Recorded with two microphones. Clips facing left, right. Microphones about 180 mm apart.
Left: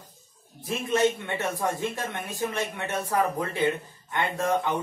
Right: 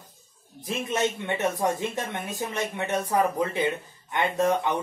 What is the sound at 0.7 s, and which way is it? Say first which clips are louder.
Speech: left 3 dB; 20° right (ahead or behind).